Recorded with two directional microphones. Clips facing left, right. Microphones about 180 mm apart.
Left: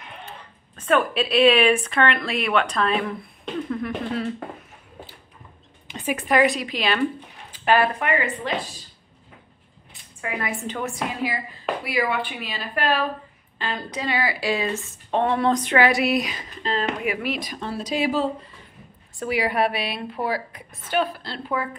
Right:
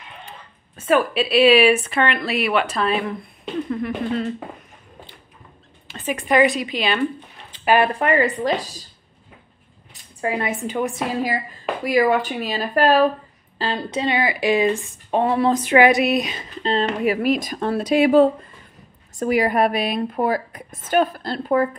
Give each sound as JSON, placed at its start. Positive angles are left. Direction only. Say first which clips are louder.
{"t": 0.7, "sound": "speech", "louder": "right 2 dB", "side_deg": -5}
{"t": 5.9, "sound": "a sound", "louder": "right 1 dB", "side_deg": 15}
{"t": 6.1, "sound": "speech", "louder": "right 3 dB", "side_deg": 0}
{"t": 7.8, "sound": "speech", "louder": "right 5 dB", "side_deg": -35}
{"t": 10.2, "sound": "a woman's voice", "louder": "right 6 dB", "side_deg": -25}
{"t": 10.6, "sound": "speech", "louder": "right 6 dB", "side_deg": -15}
{"t": 11.8, "sound": "a woman's voice", "louder": "right 9 dB", "side_deg": -45}
{"t": 13.6, "sound": "speech", "louder": "right 5 dB", "side_deg": -30}
{"t": 15.8, "sound": "speech", "louder": "right 5 dB", "side_deg": -20}
{"t": 19.1, "sound": "a woman's voice", "louder": "right 5 dB", "side_deg": -45}